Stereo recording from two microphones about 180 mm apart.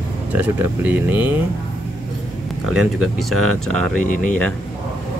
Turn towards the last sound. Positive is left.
turn(degrees=5)  # may be behind; listen again after turning